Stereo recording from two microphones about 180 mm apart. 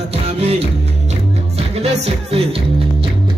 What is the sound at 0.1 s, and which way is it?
Music, 35° right (ahead or behind).